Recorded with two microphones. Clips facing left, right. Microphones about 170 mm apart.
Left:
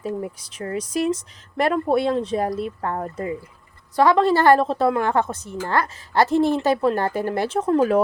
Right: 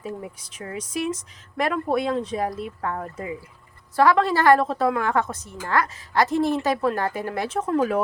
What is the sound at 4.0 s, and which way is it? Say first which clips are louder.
A woman's voice: left 2 dB; 25° left (ahead or behind).